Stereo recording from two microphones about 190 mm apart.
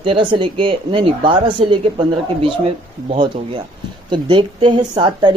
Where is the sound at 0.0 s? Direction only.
25° right (ahead or behind).